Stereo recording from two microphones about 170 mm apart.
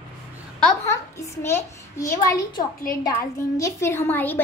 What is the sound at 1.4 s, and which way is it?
A child's voice, 15° left (ahead or behind).